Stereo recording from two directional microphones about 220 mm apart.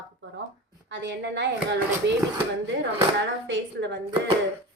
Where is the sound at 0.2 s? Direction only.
60° right (ahead or behind).